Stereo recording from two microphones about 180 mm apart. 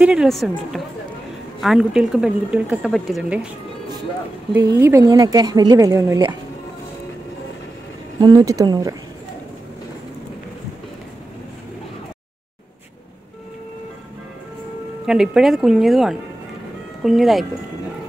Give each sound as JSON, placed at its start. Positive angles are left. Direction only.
{"t": 0.0, "sound": "speech", "side_deg": -5}
{"t": 4.6, "sound": "speech", "side_deg": -15}
{"t": 8.2, "sound": "speech", "side_deg": -25}
{"t": 15.0, "sound": "speech", "side_deg": -5}